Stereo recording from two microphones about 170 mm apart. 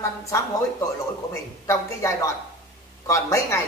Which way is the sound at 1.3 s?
20° left (ahead or behind).